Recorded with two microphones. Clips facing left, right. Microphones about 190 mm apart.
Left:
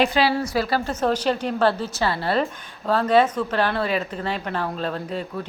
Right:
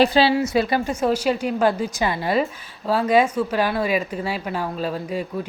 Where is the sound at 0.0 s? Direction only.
30° right (ahead or behind).